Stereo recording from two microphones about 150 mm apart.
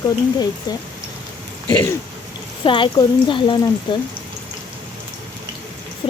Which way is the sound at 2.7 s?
35° left (ahead or behind).